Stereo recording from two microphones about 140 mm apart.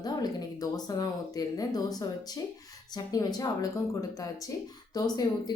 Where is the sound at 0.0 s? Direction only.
30° left (ahead or behind).